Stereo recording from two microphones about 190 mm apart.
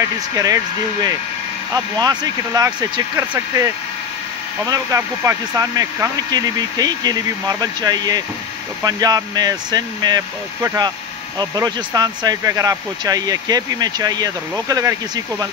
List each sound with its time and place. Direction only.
0.0 s speech: 20° right (ahead or behind)
2.0 s speech: 20° right (ahead or behind)